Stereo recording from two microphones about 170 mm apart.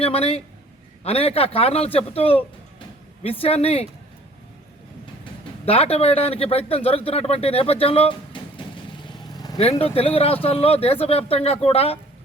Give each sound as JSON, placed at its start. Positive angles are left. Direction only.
{"t": 0.0, "sound": "a man's voice", "side_deg": 35}
{"t": 5.2, "sound": "a man's voice", "side_deg": 35}